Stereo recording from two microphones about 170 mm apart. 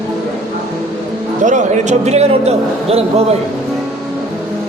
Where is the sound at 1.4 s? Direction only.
45° right (ahead or behind).